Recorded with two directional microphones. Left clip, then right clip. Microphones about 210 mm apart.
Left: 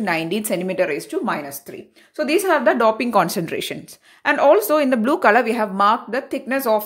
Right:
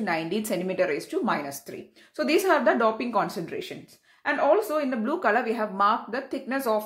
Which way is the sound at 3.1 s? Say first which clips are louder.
Left 8 dB; 45° left (ahead or behind).